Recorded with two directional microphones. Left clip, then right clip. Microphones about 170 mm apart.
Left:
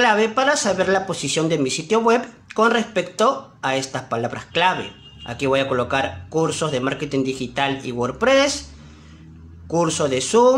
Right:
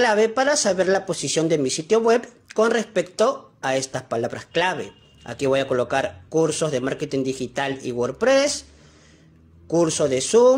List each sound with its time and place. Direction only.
0.0 s speech: 35° right (ahead or behind)
9.7 s speech: 30° right (ahead or behind)